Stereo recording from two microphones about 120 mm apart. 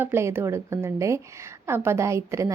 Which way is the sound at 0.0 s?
20° right (ahead or behind).